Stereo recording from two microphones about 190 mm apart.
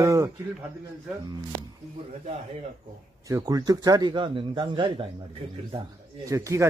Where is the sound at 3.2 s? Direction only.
20° right (ahead or behind).